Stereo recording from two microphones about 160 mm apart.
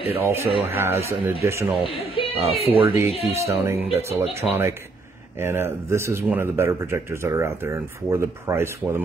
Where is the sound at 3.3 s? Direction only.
20° right (ahead or behind).